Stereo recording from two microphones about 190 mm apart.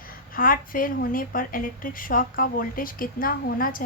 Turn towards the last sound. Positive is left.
turn(degrees=50)  # may be behind; listen again after turning